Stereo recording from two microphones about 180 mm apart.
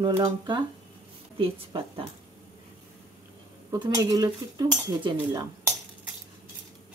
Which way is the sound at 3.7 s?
25° right (ahead or behind).